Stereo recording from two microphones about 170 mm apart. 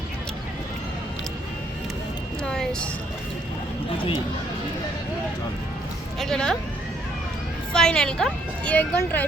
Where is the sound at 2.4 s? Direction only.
5° left (ahead or behind).